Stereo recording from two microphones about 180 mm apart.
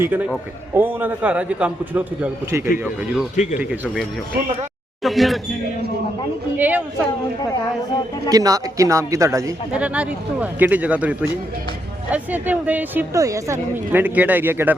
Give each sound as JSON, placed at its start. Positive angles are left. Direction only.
{"t": 0.0, "sound": "a woman's voice", "side_deg": -10}
{"t": 3.3, "sound": "speech", "side_deg": 40}
{"t": 3.6, "sound": "speech", "side_deg": -5}
{"t": 5.0, "sound": "speech", "side_deg": 0}
{"t": 6.6, "sound": "a woman's voice", "side_deg": -10}
{"t": 8.3, "sound": "a woman's voice", "side_deg": -20}